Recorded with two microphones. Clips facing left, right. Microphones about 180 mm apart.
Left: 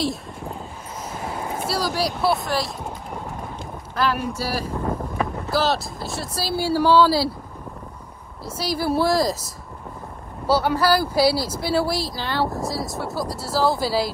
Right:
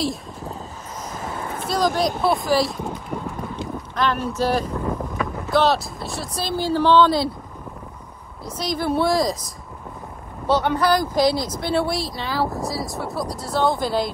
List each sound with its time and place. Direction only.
1.1 s a sound: 15° left (ahead or behind)
1.7 s speech: 10° left (ahead or behind)
3.9 s speech: 5° left (ahead or behind)
8.5 s speech: 5° left (ahead or behind)
10.4 s speech: 5° left (ahead or behind)